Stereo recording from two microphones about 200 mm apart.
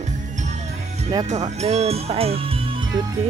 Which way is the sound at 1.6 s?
30° right (ahead or behind).